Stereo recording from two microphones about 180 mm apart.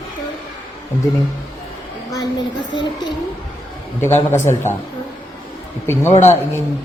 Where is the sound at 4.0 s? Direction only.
15° left (ahead or behind).